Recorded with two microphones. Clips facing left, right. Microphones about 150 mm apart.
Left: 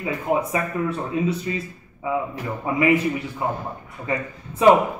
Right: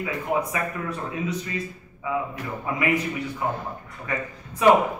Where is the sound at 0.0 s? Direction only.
30° left (ahead or behind).